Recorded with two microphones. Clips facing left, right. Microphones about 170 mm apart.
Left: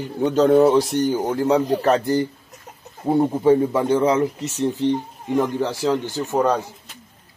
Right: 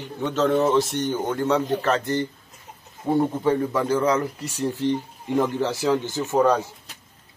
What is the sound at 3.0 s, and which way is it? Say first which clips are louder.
Speech: left 5 dB; 25° left (ahead or behind).